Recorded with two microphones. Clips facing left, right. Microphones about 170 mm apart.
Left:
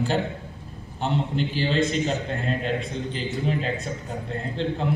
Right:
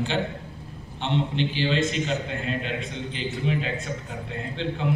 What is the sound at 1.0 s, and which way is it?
A man's voice, 40° left (ahead or behind).